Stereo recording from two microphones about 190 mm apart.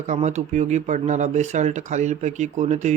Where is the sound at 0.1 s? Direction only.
35° right (ahead or behind).